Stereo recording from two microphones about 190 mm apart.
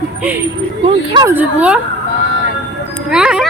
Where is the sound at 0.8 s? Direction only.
25° right (ahead or behind).